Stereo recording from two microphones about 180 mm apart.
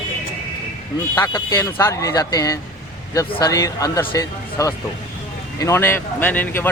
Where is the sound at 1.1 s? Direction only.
15° left (ahead or behind).